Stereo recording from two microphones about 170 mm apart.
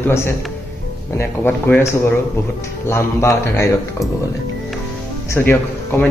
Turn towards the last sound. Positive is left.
turn(degrees=10)  # may be behind; listen again after turning